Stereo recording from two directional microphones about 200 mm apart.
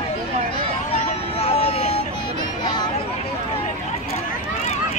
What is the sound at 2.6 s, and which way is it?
Chatter, 20° left (ahead or behind).